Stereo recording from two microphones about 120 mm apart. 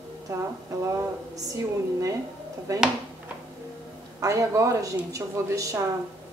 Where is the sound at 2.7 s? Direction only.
30° right (ahead or behind).